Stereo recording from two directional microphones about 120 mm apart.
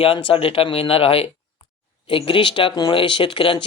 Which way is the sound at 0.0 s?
45° left (ahead or behind).